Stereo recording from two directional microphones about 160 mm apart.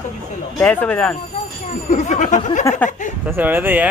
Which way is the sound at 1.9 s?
50° left (ahead or behind).